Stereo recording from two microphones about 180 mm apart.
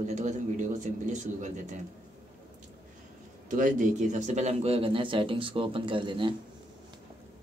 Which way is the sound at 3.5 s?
45° right (ahead or behind).